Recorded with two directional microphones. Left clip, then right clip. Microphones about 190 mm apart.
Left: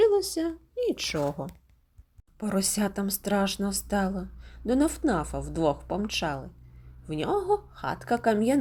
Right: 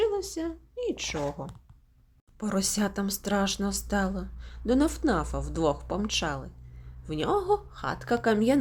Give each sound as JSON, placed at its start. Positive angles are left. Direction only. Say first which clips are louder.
{"t": 0.0, "sound": "a woman's voice", "louder": "left 5 dB", "side_deg": 30}
{"t": 2.4, "sound": "speech", "louder": "left 1 dB", "side_deg": 5}